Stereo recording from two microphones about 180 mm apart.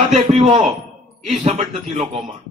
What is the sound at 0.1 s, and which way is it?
A man's voice, 35° right (ahead or behind).